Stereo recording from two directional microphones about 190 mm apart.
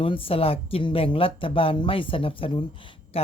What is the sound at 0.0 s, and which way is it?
A woman's voice, 30° left (ahead or behind).